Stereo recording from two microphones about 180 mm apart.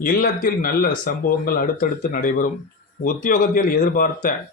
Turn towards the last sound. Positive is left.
turn(degrees=50)  # may be behind; listen again after turning